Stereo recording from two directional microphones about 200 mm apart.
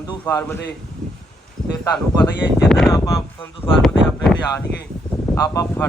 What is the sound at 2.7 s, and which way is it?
Speech, centre (ahead or behind).